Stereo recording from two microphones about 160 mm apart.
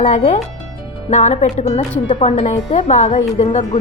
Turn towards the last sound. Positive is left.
turn(degrees=45)  # may be behind; listen again after turning